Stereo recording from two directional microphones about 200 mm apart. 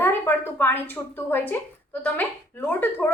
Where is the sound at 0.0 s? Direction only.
10° left (ahead or behind).